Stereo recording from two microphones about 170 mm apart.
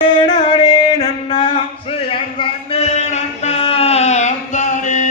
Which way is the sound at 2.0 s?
35° left (ahead or behind).